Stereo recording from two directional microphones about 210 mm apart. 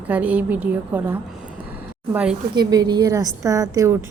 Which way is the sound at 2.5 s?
20° right (ahead or behind).